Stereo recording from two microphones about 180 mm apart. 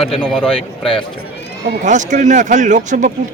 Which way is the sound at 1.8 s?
45° right (ahead or behind).